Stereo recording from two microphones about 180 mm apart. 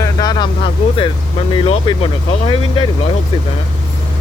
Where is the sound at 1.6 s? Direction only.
25° left (ahead or behind).